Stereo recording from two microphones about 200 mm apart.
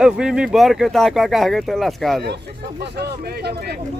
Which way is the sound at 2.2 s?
55° right (ahead or behind).